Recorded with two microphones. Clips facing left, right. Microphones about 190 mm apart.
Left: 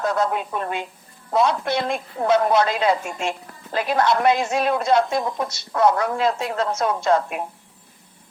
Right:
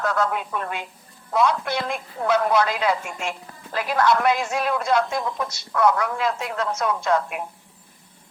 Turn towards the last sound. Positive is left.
turn(degrees=30)  # may be behind; listen again after turning